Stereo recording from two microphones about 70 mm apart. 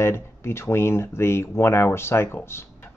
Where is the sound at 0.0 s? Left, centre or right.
Left.